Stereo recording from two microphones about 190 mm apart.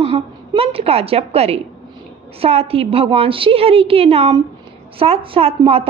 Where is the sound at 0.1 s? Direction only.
30° right (ahead or behind).